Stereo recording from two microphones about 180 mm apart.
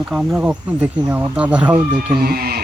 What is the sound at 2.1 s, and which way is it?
Speech, 60° right (ahead or behind).